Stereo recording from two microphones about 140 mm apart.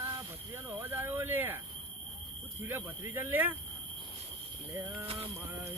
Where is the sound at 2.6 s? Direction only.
15° right (ahead or behind).